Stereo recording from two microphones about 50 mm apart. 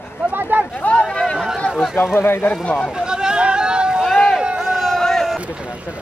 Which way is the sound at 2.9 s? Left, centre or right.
Centre.